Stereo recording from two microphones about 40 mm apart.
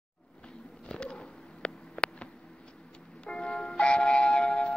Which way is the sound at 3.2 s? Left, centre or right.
Left.